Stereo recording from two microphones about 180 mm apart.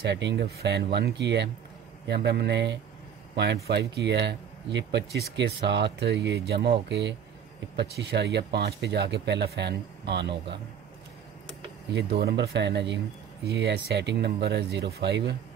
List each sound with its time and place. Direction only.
0.0 s speech: 75° right (ahead or behind)
11.9 s speech: 70° right (ahead or behind)